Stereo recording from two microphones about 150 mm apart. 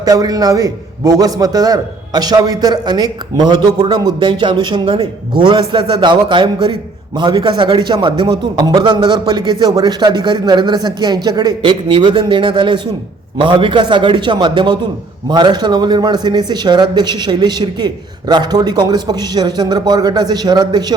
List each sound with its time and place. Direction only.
0.0 s a man's voice: 25° right (ahead or behind)